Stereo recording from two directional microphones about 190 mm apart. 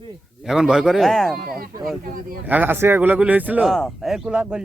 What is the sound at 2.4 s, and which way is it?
A man's voice, 10° right (ahead or behind).